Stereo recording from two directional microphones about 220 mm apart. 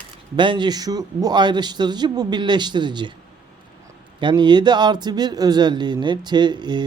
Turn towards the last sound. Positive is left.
turn(degrees=-20)  # may be behind; listen again after turning